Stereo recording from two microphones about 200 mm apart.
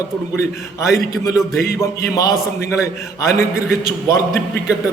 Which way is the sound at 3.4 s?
5° right (ahead or behind).